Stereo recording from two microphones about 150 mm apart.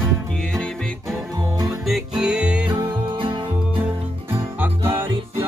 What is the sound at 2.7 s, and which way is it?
Music, 35° right (ahead or behind).